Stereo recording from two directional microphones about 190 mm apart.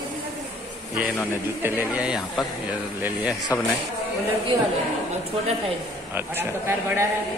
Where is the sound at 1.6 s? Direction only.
5° right (ahead or behind).